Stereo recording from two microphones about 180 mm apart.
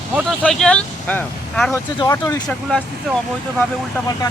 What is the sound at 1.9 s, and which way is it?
Speech, 20° left (ahead or behind).